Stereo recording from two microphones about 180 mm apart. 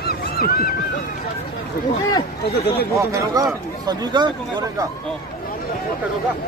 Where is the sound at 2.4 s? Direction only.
60° left (ahead or behind).